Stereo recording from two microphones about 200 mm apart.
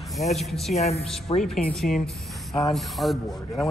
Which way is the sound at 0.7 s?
30° left (ahead or behind).